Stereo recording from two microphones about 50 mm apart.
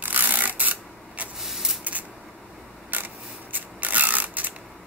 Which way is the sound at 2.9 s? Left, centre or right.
Right.